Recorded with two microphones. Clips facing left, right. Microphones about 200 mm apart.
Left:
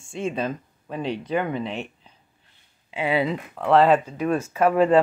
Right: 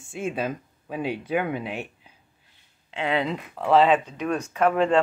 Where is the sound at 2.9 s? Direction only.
10° left (ahead or behind).